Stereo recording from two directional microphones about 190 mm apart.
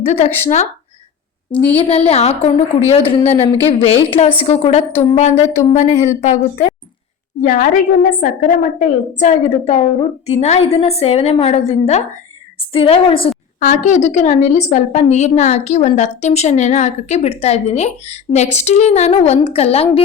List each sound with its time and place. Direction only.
0.0 s a woman's voice: 35° left (ahead or behind)
1.5 s a woman's voice: 10° left (ahead or behind)
1.8 s a woman's voice: 30° left (ahead or behind)
13.6 s a woman's voice: 40° left (ahead or behind)